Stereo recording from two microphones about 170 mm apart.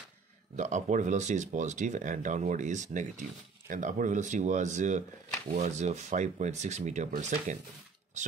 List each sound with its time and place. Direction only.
0.6 s speech: 45° right (ahead or behind)